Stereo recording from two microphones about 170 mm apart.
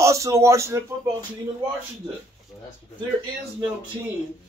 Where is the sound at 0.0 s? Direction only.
15° right (ahead or behind).